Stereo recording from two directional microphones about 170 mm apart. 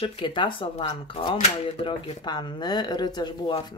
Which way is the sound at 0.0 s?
30° left (ahead or behind).